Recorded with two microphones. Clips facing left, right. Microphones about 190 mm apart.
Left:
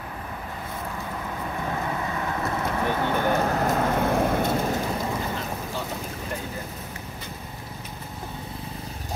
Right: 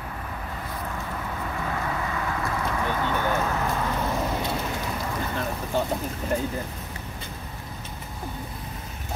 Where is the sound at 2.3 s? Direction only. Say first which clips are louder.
Left 2 dB; 25° left (ahead or behind).